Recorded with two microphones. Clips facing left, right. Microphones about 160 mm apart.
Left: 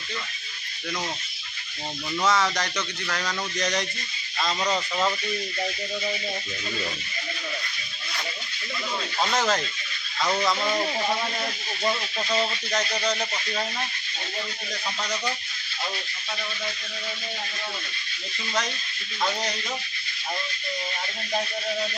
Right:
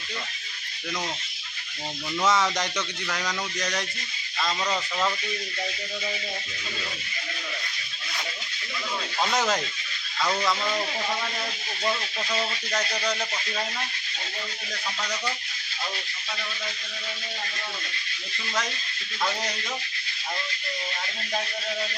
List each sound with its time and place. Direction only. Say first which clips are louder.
2.2 s speech: even; 20° right (ahead or behind)
3.2 s speech: left 4 dB; centre (ahead or behind)
4.6 s speech: left 3 dB; 15° left (ahead or behind)
9.2 s speech: even; centre (ahead or behind)
10.2 s speech: left 1 dB; 15° left (ahead or behind)